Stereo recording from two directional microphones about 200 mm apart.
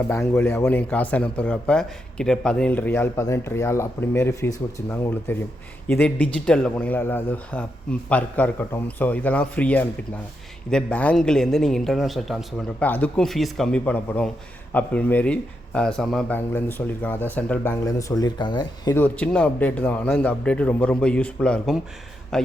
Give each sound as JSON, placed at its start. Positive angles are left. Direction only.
{"t": 0.1, "sound": "a man's voice", "side_deg": 15}